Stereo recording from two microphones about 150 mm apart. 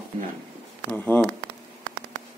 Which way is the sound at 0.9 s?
15° left (ahead or behind).